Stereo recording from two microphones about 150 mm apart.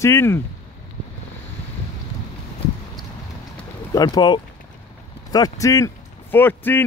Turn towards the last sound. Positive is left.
turn(degrees=15)  # may be behind; listen again after turning